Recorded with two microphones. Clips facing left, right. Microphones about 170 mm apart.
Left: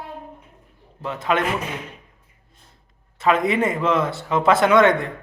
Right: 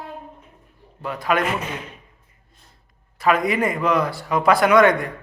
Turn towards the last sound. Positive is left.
turn(degrees=25)  # may be behind; listen again after turning